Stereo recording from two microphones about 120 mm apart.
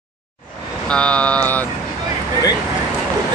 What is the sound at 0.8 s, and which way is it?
Vehicle, 10° left (ahead or behind).